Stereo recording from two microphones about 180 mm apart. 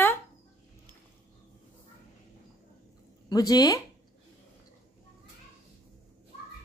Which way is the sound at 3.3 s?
20° left (ahead or behind).